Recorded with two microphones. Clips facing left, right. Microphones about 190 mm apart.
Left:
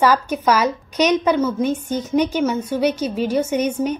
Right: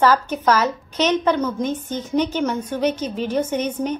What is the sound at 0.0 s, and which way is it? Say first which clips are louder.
A woman's voice: even; 10° left (ahead or behind).